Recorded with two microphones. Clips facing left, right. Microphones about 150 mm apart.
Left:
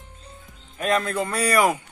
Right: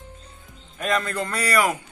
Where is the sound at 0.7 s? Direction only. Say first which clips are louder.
Left 2 dB; centre (ahead or behind).